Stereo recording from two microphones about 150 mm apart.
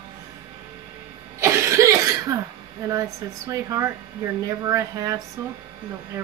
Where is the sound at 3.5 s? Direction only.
20° right (ahead or behind).